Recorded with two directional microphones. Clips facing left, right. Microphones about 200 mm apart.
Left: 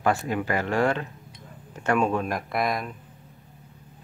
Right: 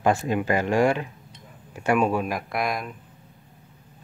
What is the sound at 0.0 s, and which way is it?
Speech, 20° right (ahead or behind).